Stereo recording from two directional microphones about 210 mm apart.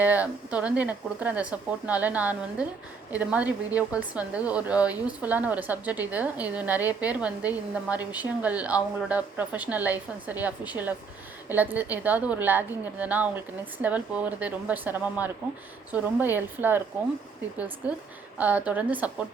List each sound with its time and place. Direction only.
0.0 s a woman's voice: 5° right (ahead or behind)
17.8 s a woman's voice: 5° right (ahead or behind)